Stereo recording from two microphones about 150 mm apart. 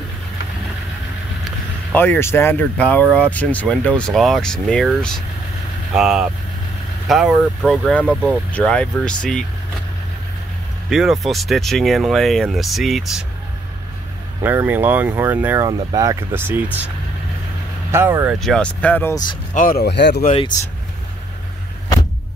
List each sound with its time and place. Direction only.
1.9 s speech: 10° left (ahead or behind)
10.9 s speech: centre (ahead or behind)
14.4 s speech: 15° right (ahead or behind)
15.6 s speech: 25° right (ahead or behind)
17.9 s speech: 15° right (ahead or behind)
18.4 s speech: 5° left (ahead or behind)
19.5 s speech: 70° left (ahead or behind)